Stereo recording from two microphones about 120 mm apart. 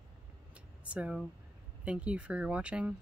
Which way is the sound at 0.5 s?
10° right (ahead or behind).